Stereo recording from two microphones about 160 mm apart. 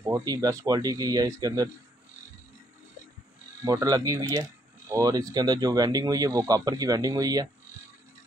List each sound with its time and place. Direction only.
0.0 s speech: 20° right (ahead or behind)
3.6 s speech: 20° right (ahead or behind)